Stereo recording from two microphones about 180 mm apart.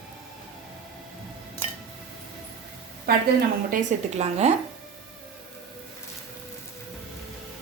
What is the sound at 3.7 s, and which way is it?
Speech, 40° right (ahead or behind).